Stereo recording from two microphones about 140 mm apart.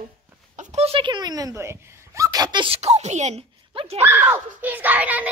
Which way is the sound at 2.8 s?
50° right (ahead or behind).